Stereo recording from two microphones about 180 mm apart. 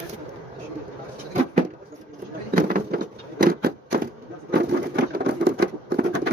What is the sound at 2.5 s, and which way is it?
Insect, 50° right (ahead or behind).